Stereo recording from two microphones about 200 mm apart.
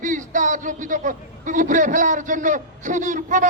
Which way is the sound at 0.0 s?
40° right (ahead or behind).